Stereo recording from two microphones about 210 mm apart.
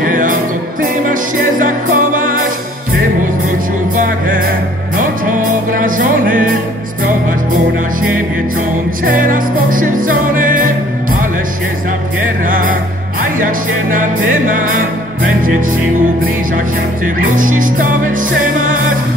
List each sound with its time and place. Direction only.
0.0 s music: 40° right (ahead or behind)
1.6 s music: 40° right (ahead or behind)
3.9 s music: 40° right (ahead or behind)
9.0 s music: 40° right (ahead or behind)
12.4 s music: 40° right (ahead or behind)
17.0 s music: 40° right (ahead or behind)